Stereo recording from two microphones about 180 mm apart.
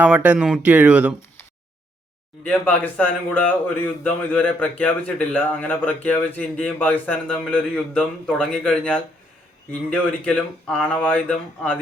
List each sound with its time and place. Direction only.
0.0 s speech: 5° right (ahead or behind)
2.4 s speech: 10° left (ahead or behind)